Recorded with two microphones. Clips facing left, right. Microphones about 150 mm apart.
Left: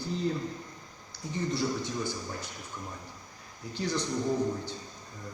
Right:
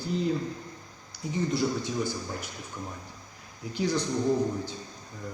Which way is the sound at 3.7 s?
10° right (ahead or behind).